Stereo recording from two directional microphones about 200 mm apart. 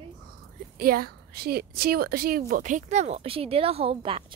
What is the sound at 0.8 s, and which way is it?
A woman's voice, 50° right (ahead or behind).